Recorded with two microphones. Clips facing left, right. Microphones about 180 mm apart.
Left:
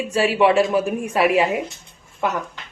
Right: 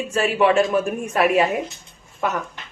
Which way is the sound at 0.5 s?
30° left (ahead or behind).